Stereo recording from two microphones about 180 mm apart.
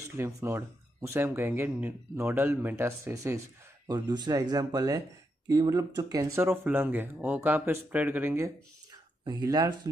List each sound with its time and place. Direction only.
0.2 s speech: 15° right (ahead or behind)